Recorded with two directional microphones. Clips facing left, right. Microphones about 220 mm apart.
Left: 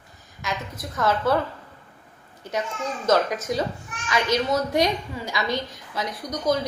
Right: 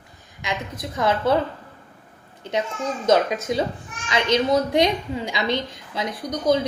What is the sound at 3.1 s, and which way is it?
A woman's voice, 25° right (ahead or behind).